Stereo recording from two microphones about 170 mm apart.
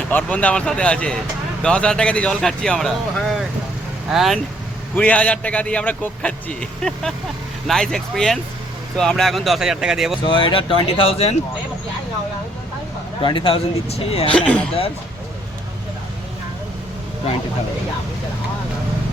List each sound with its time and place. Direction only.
0.1 s a man's voice: 10° left (ahead or behind)
10.2 s speech: 30° left (ahead or behind)
13.2 s speech: 30° left (ahead or behind)
14.3 s a man's voice: 5° left (ahead or behind)